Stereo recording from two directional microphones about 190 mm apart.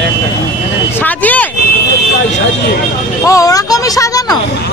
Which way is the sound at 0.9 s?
10° left (ahead or behind).